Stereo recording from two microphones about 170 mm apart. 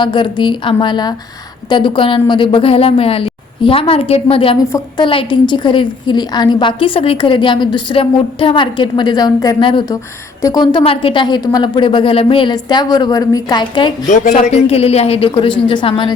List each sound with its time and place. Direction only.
0.0 s a woman's voice: 25° left (ahead or behind)
14.1 s a woman's voice: 45° left (ahead or behind); by 16.1 s 30° left (ahead or behind)